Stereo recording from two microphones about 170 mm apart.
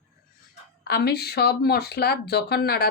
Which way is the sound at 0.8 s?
70° left (ahead or behind).